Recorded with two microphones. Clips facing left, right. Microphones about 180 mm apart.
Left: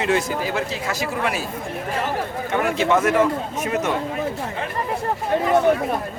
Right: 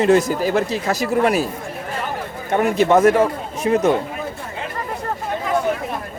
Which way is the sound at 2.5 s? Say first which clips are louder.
Right 5 dB; 40° right (ahead or behind).